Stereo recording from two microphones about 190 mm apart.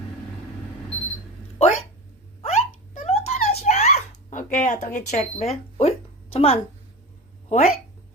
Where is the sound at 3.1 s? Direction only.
35° left (ahead or behind).